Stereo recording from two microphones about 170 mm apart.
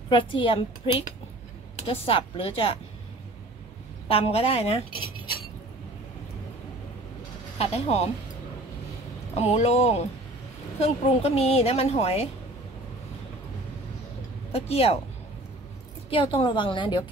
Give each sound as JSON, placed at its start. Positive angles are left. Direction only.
{"t": 0.1, "sound": "a woman's voice", "side_deg": 30}
{"t": 4.1, "sound": "a woman's voice", "side_deg": 35}
{"t": 7.5, "sound": "a woman's voice", "side_deg": 35}
{"t": 9.3, "sound": "a woman's voice", "side_deg": 40}
{"t": 14.5, "sound": "a woman's voice", "side_deg": 35}
{"t": 16.1, "sound": "a woman's voice", "side_deg": 30}